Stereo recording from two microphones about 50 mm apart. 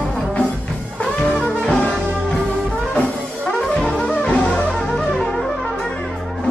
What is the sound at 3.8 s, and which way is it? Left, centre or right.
Music, centre.